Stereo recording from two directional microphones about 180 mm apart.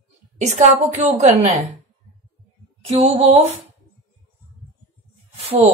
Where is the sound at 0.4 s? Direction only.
40° right (ahead or behind).